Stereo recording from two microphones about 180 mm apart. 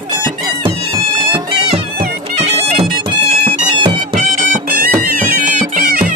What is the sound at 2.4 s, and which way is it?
Bagpipes, 35° right (ahead or behind).